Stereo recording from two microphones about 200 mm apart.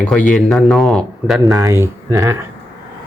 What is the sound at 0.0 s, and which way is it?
Speech, 5° left (ahead or behind).